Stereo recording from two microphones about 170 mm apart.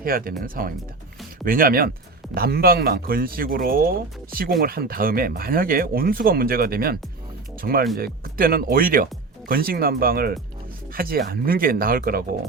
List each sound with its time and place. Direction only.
0.0 s speech: 60° right (ahead or behind)